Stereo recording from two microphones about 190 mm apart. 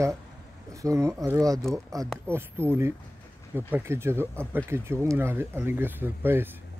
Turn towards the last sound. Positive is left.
turn(degrees=-10)  # may be behind; listen again after turning